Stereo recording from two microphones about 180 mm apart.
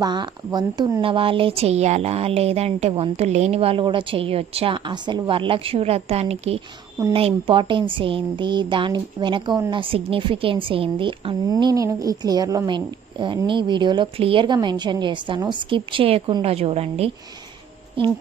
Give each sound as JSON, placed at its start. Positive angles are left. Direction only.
{"t": 0.0, "sound": "a woman's voice", "side_deg": -25}